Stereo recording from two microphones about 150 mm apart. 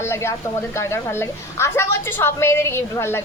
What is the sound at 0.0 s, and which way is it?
A woman's voice, 15° left (ahead or behind).